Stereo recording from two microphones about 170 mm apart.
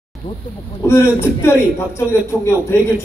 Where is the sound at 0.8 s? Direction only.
15° left (ahead or behind).